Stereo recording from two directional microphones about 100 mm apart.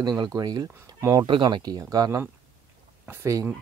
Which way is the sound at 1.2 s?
50° right (ahead or behind).